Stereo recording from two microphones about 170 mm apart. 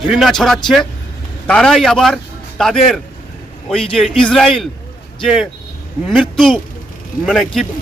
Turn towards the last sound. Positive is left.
turn(degrees=0)  # may be behind; listen again after turning